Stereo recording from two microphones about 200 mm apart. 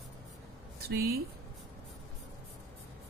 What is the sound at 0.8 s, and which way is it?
Speech, 50° right (ahead or behind).